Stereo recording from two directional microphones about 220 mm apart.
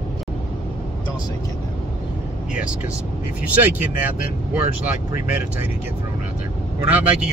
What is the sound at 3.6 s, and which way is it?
Speech, 10° right (ahead or behind).